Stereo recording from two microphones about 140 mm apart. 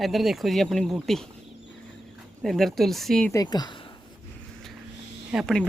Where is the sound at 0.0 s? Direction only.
Centre (ahead or behind).